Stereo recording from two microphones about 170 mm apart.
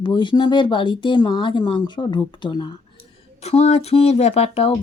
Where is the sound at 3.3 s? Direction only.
40° left (ahead or behind).